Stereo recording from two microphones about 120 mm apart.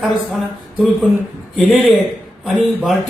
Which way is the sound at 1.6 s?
Centre (ahead or behind).